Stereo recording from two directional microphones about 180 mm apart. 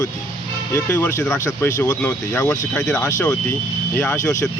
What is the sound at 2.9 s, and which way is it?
Speech, 15° left (ahead or behind).